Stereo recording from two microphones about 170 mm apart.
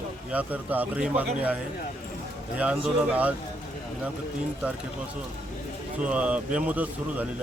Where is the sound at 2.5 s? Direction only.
5° right (ahead or behind).